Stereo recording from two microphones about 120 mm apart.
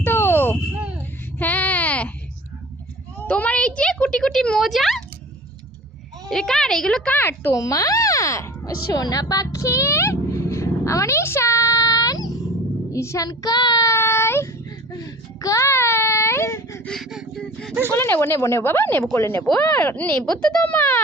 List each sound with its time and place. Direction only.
0.0 s a sound: 20° left (ahead or behind)
3.2 s speech: 10° left (ahead or behind)
6.2 s speech: 5° left (ahead or behind); by 12.3 s 30° left (ahead or behind)
12.9 s child singing: 25° left (ahead or behind)
14.9 s baby cry: 30° left (ahead or behind)
16.8 s a sound: 5° left (ahead or behind)
17.9 s speech: 20° left (ahead or behind)